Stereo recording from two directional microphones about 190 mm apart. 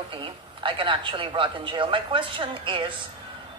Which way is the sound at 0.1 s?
25° right (ahead or behind).